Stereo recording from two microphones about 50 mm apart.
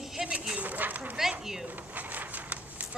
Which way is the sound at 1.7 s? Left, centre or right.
Right.